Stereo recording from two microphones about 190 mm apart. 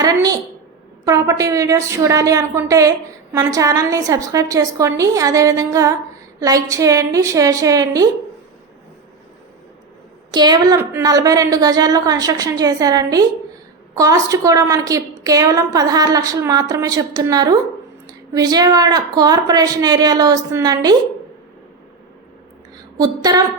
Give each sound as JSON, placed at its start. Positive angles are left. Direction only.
{"t": 0.0, "sound": "a sound", "side_deg": -20}
{"t": 1.0, "sound": "a woman's voice", "side_deg": -15}
{"t": 10.3, "sound": "a woman's voice", "side_deg": -20}
{"t": 23.0, "sound": "a woman's voice", "side_deg": -20}